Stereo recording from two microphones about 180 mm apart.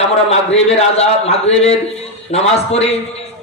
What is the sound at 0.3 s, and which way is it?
Speech, 35° left (ahead or behind).